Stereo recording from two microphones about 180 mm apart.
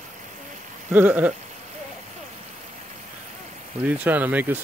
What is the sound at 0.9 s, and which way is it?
Speech, 10° right (ahead or behind).